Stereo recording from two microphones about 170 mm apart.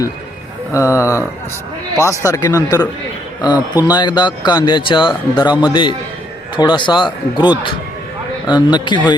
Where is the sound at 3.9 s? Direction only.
25° left (ahead or behind).